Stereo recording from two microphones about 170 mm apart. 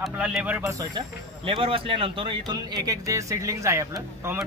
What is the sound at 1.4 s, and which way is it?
A man's voice, 35° right (ahead or behind).